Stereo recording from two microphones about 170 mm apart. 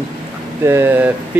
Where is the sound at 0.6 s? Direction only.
15° right (ahead or behind).